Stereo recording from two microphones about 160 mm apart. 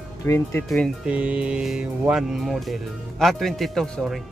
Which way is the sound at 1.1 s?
10° right (ahead or behind).